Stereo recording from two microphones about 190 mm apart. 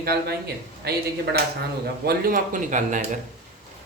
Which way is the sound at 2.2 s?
45° right (ahead or behind).